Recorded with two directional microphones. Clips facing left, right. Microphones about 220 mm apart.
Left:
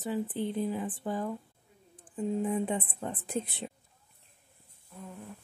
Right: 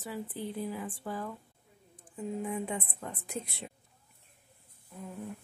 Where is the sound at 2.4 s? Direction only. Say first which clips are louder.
Left 4 dB; 35° left (ahead or behind).